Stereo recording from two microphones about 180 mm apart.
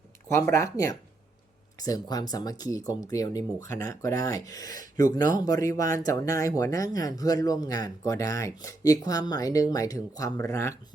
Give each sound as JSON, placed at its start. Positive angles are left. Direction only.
{"t": 0.5, "sound": "speech", "side_deg": 15}